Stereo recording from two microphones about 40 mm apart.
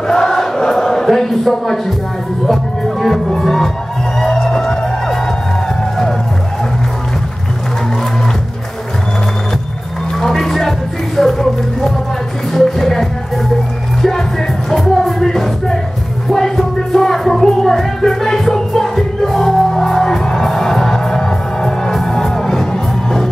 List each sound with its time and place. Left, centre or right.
0.1 s a sound: centre
2.4 s music: centre
10.1 s music: centre
14.7 s music: centre